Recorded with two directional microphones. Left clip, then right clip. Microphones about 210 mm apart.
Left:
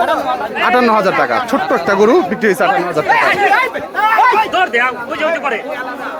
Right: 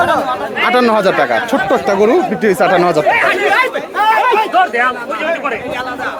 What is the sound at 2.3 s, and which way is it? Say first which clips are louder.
Speech: even; 5° right (ahead or behind).